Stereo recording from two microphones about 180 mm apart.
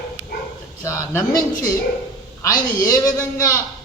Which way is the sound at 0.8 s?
15° left (ahead or behind).